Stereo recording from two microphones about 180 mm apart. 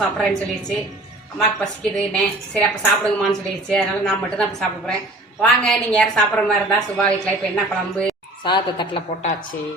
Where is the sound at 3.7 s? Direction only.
5° left (ahead or behind).